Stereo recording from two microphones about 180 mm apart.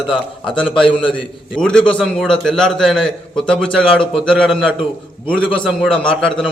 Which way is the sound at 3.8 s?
30° left (ahead or behind).